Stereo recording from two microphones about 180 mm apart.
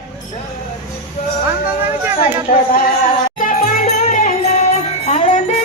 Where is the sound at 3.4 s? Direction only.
45° left (ahead or behind).